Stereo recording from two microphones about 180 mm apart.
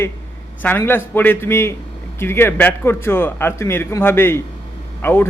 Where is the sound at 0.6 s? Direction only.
10° left (ahead or behind).